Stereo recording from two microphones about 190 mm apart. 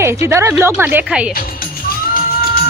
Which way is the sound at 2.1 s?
50° left (ahead or behind).